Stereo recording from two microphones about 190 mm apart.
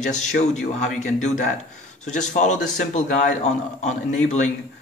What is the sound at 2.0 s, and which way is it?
A man's voice, 40° left (ahead or behind).